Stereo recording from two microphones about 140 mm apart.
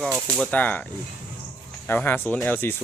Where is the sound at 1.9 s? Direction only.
15° left (ahead or behind).